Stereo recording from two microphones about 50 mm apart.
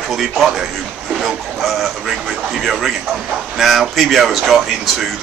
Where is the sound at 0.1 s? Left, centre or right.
Centre.